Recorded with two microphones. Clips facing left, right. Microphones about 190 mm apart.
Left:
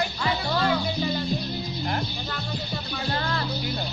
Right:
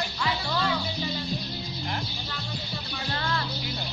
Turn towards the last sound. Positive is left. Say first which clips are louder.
# left 2 dB
turn(degrees=35)  # may be behind; listen again after turning